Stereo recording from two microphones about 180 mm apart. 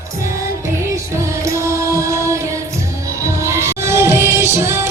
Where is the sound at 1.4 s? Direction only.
15° right (ahead or behind).